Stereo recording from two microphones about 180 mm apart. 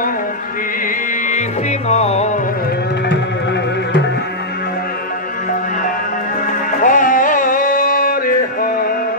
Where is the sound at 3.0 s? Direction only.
75° left (ahead or behind).